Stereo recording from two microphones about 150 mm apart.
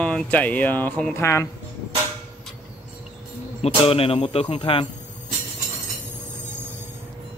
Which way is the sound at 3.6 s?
40° left (ahead or behind).